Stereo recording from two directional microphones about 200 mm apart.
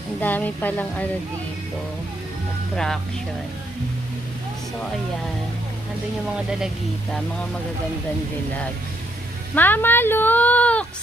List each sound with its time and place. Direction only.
0.2 s speech: 10° left (ahead or behind)
2.7 s speech: 5° left (ahead or behind)
6.3 s speech: 5° right (ahead or behind)
9.6 s speech: 10° left (ahead or behind)